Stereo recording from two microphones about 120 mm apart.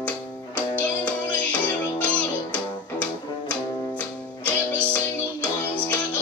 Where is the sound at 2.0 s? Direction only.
10° left (ahead or behind).